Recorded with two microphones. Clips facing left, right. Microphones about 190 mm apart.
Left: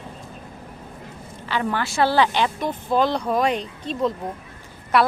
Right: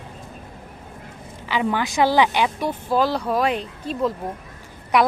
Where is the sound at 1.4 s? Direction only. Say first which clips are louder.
Right 2 dB; 15° right (ahead or behind).